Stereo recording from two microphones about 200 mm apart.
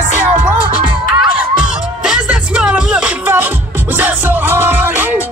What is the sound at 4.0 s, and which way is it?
Music, 10° right (ahead or behind).